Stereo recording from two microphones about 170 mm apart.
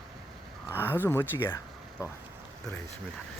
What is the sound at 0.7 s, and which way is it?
Speech, 15° left (ahead or behind).